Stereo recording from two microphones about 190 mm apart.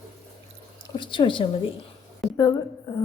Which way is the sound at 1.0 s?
25° left (ahead or behind).